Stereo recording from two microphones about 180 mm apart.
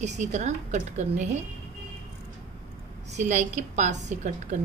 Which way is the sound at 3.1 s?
40° right (ahead or behind).